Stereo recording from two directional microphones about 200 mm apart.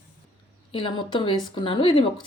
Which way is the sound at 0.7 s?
25° left (ahead or behind).